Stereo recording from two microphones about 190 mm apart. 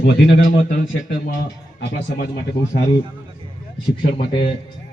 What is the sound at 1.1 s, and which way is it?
Speech, 60° left (ahead or behind).